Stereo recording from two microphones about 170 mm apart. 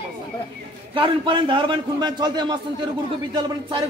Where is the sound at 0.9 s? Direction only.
30° right (ahead or behind).